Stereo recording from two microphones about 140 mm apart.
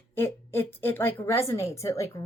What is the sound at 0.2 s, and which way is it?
A woman's voice, 15° left (ahead or behind).